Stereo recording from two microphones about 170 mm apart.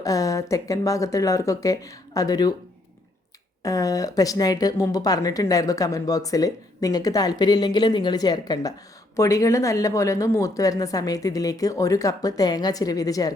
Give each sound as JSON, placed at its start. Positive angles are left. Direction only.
{"t": 0.0, "sound": "speech", "side_deg": 20}
{"t": 3.6, "sound": "speech", "side_deg": 20}